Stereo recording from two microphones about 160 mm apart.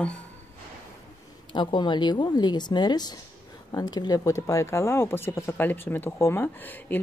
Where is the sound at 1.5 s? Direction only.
30° left (ahead or behind).